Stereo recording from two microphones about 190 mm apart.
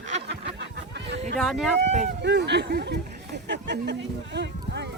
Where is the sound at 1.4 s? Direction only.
Centre (ahead or behind).